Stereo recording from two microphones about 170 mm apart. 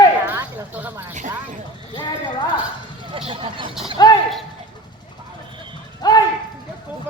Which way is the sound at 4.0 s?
25° left (ahead or behind).